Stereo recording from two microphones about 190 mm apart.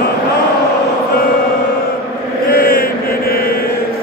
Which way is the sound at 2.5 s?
55° left (ahead or behind).